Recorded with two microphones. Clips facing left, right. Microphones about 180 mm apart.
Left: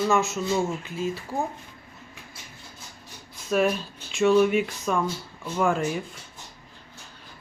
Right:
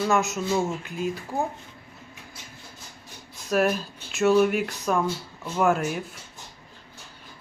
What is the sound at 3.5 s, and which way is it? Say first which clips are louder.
Speech: even; 5° right (ahead or behind).